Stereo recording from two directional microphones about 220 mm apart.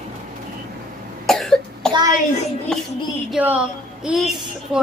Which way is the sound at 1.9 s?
20° right (ahead or behind).